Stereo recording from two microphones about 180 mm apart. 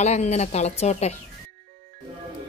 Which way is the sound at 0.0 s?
35° left (ahead or behind).